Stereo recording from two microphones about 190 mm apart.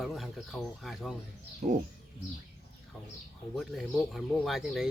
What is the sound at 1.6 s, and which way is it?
Speech, 40° right (ahead or behind).